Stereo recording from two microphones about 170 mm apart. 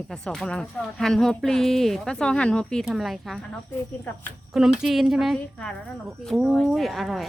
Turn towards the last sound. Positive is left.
turn(degrees=0)  # may be behind; listen again after turning